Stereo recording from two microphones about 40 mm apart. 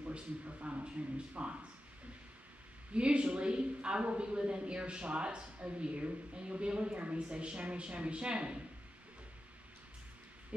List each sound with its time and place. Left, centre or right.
0.0 s speech: right
2.9 s a woman's voice: right